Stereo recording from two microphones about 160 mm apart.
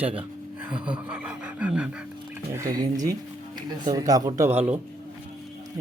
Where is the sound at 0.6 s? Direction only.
5° right (ahead or behind).